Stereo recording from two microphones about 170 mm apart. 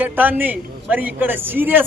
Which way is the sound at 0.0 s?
10° right (ahead or behind).